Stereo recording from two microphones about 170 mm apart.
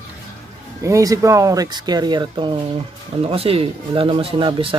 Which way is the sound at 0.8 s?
20° right (ahead or behind).